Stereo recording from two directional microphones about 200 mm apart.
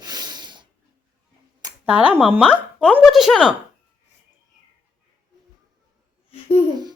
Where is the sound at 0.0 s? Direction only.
20° right (ahead or behind).